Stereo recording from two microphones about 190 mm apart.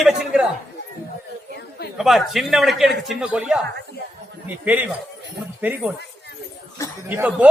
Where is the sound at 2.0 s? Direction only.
Centre (ahead or behind).